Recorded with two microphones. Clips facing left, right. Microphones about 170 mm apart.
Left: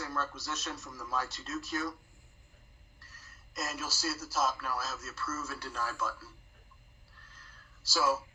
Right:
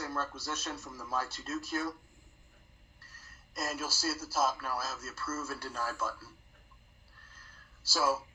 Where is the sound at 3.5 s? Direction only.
30° right (ahead or behind).